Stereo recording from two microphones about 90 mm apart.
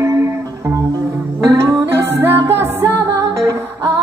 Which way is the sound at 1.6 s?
30° right (ahead or behind).